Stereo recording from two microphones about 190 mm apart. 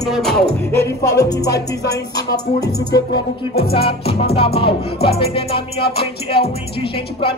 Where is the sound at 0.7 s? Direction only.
15° left (ahead or behind).